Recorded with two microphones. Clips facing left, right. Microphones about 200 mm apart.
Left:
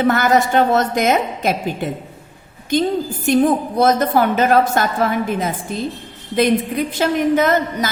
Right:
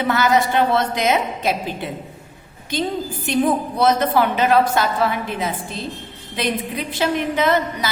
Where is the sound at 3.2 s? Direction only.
45° left (ahead or behind).